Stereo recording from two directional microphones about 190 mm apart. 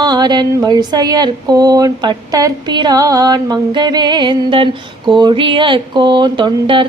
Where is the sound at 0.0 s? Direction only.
20° right (ahead or behind).